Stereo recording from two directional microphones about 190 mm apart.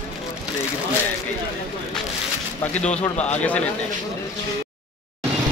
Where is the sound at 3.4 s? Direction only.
5° left (ahead or behind).